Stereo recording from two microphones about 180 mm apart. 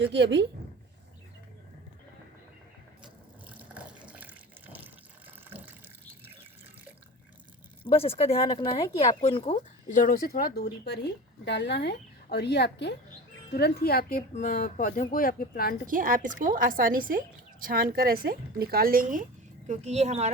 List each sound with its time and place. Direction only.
0.0 s a woman's voice: 75° right (ahead or behind)
3.4 s water tap: 10° right (ahead or behind)
5.5 s water: 10° right (ahead or behind)
7.9 s speech: 35° left (ahead or behind)
9.9 s speech: 50° left (ahead or behind)
15.9 s a woman's voice: 50° right (ahead or behind)
19.6 s speech: 40° right (ahead or behind)